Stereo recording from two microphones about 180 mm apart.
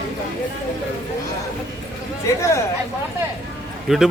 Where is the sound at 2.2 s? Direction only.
15° left (ahead or behind).